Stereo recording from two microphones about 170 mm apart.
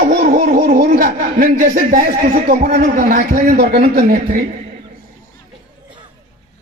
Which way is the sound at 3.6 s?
70° right (ahead or behind).